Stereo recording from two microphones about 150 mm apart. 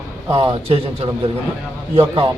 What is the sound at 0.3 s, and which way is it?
Speech, 35° right (ahead or behind).